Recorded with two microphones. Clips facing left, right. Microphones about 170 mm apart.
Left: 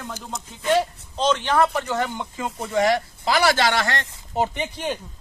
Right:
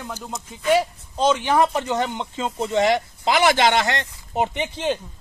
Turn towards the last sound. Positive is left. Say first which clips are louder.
# right 3 dB
turn(degrees=-20)  # may be behind; listen again after turning